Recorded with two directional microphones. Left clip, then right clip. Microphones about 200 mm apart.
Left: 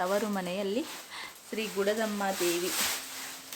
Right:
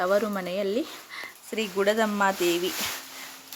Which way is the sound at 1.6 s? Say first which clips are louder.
Right 6 dB; 25° right (ahead or behind).